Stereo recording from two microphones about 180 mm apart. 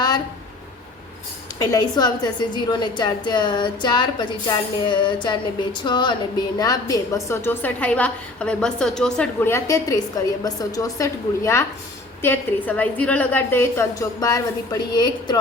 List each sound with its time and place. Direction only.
1.7 s a woman's voice: 25° left (ahead or behind)